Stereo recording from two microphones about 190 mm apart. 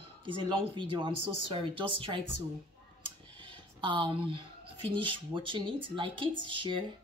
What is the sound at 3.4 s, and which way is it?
Speech, 25° right (ahead or behind).